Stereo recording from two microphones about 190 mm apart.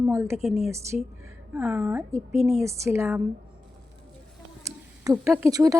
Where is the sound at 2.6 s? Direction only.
15° right (ahead or behind).